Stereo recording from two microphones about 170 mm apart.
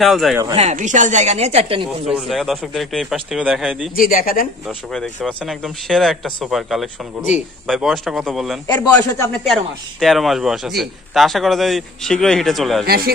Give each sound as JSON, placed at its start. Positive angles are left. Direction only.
{"t": 0.0, "sound": "a man's voice", "side_deg": 0}
{"t": 0.6, "sound": "speech", "side_deg": -45}
{"t": 2.0, "sound": "a man's voice", "side_deg": 0}
{"t": 3.9, "sound": "speech", "side_deg": 55}
{"t": 4.6, "sound": "a man's voice", "side_deg": 0}
{"t": 8.6, "sound": "a man's voice", "side_deg": 25}
{"t": 9.5, "sound": "a man's voice", "side_deg": 0}
{"t": 12.8, "sound": "speech", "side_deg": -65}